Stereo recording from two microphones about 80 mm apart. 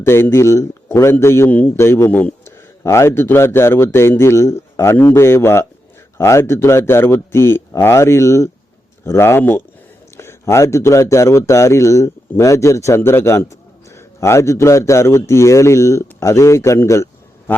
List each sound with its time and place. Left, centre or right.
0.0 s a man's voice: left
1.5 s a man's voice: left
1.8 s a man's voice: left